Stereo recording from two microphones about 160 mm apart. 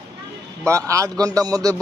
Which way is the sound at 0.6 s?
20° right (ahead or behind).